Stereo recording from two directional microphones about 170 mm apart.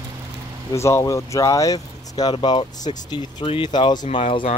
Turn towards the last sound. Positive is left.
turn(degrees=35)  # may be behind; listen again after turning